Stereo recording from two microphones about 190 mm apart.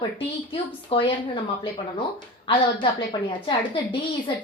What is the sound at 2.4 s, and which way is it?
A woman's voice, 25° left (ahead or behind).